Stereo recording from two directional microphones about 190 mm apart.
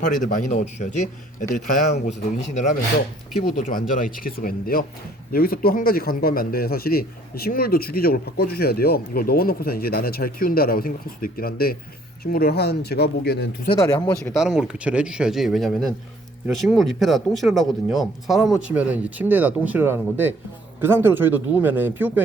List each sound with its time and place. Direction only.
0.2 s a man's voice: 40° left (ahead or behind); by 13.5 s 60° left (ahead or behind)
13.7 s speech: 15° left (ahead or behind)
14.3 s speech: 5° right (ahead or behind)